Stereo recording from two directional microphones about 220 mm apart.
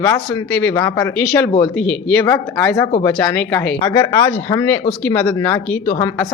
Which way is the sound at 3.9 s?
20° left (ahead or behind).